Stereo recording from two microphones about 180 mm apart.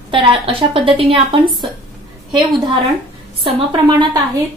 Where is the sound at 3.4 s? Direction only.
25° right (ahead or behind).